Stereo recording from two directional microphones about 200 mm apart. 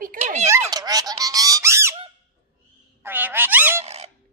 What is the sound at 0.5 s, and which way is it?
Squeak, 20° right (ahead or behind).